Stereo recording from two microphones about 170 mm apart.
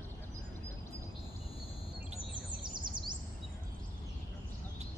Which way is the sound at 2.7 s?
25° right (ahead or behind).